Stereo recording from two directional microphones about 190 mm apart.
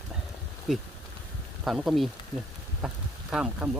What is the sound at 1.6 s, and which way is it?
Speech, centre (ahead or behind).